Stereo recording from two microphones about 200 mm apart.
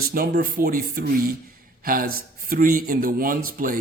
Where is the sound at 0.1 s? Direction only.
45° right (ahead or behind).